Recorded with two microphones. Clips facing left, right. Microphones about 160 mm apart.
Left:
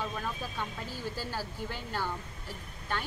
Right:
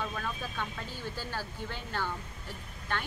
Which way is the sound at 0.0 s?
10° left (ahead or behind).